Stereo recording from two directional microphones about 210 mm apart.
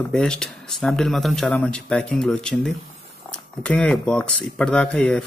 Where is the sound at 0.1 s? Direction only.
5° left (ahead or behind).